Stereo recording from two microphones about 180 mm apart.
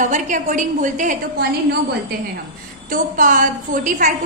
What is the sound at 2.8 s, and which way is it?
A woman's voice, 50° right (ahead or behind).